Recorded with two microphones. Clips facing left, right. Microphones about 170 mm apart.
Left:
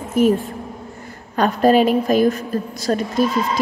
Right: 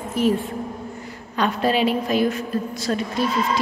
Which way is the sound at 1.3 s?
45° left (ahead or behind).